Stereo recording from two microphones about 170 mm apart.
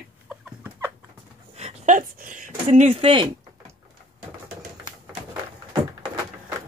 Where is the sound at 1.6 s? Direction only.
45° right (ahead or behind).